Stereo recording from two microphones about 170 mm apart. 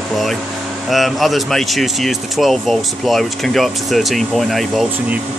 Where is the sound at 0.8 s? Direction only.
Centre (ahead or behind).